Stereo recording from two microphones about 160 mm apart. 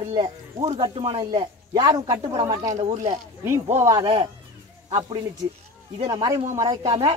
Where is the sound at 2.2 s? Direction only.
35° right (ahead or behind).